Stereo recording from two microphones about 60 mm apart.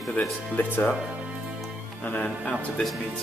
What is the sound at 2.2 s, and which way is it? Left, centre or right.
Speech, centre.